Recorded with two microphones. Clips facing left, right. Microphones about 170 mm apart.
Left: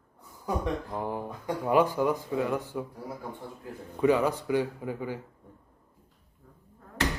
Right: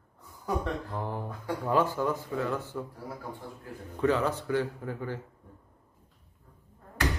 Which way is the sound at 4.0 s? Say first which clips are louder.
Left 3 dB; 10° left (ahead or behind).